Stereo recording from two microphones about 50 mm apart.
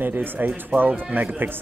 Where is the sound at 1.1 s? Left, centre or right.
Right.